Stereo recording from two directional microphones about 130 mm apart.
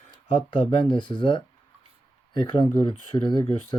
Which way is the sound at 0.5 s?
35° left (ahead or behind).